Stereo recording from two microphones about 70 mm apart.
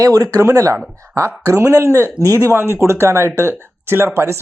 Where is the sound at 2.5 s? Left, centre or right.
Right.